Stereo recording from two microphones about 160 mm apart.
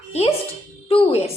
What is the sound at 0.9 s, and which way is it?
Speech, 35° left (ahead or behind).